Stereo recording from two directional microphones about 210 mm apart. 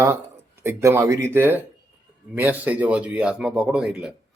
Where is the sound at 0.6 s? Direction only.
10° right (ahead or behind).